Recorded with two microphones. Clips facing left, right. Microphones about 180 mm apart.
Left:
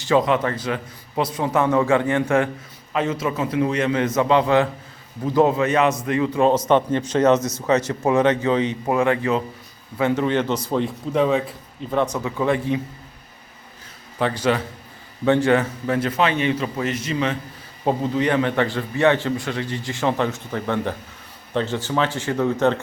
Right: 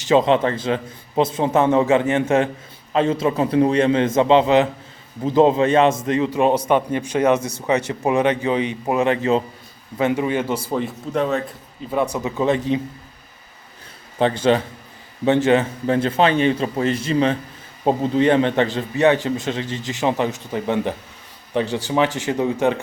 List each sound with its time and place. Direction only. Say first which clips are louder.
0.0 s a man's voice: right 3 dB; 25° right (ahead or behind)
10.0 s a man's voice: even; 15° right (ahead or behind)
12.1 s a man's voice: right 2 dB; 20° right (ahead or behind)
14.2 s a man's voice: right 4 dB; 25° right (ahead or behind)